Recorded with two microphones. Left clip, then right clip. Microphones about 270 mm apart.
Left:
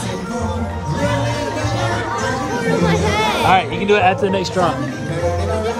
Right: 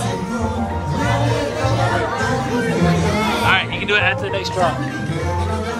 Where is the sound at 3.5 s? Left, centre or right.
Centre.